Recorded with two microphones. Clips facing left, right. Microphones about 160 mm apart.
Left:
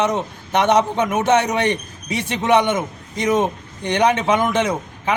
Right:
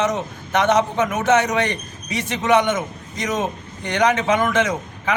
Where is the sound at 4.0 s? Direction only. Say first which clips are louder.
Left 1 dB; 30° left (ahead or behind).